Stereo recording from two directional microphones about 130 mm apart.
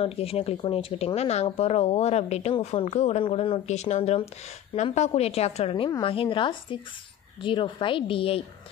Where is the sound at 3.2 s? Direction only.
45° left (ahead or behind).